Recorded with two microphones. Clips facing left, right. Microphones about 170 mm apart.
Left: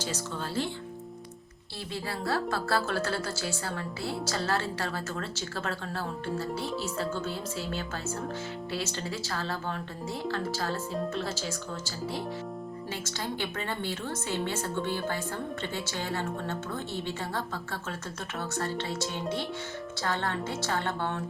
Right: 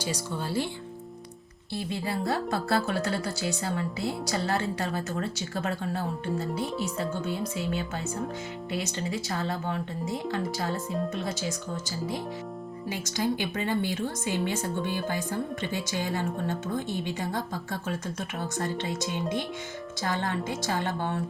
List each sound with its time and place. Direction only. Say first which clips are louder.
0.0 s a woman's voice: right 2 dB; 10° right (ahead or behind)
1.9 s a woman's voice: right 2 dB; 20° right (ahead or behind)